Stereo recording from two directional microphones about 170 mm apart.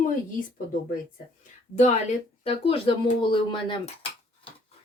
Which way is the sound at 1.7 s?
40° left (ahead or behind).